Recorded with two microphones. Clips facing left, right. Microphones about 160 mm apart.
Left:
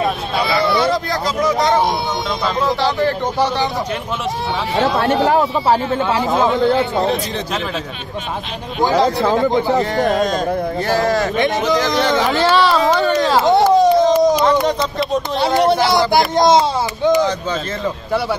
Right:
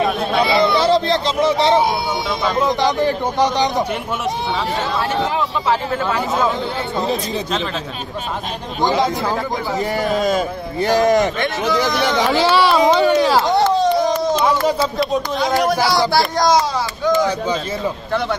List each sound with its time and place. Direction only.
0.5 s a sound: 25° right (ahead or behind)
2.4 s speech: 15° right (ahead or behind)
4.9 s speech: 55° left (ahead or behind)
10.2 s speech: 10° right (ahead or behind)
13.5 s a sound: 20° left (ahead or behind)
15.7 s speech: 25° left (ahead or behind)